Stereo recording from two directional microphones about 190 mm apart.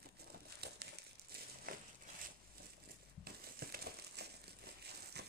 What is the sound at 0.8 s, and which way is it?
Crumpling, 60° right (ahead or behind).